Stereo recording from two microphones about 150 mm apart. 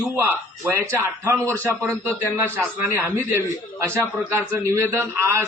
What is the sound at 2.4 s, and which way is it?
A man's voice, 15° right (ahead or behind).